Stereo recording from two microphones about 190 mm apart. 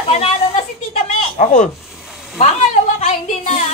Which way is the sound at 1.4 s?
40° left (ahead or behind).